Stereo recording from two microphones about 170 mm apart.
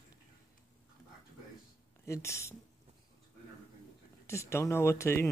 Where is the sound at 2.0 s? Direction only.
15° left (ahead or behind).